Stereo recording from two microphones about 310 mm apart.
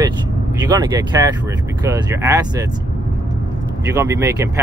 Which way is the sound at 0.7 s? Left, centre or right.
Centre.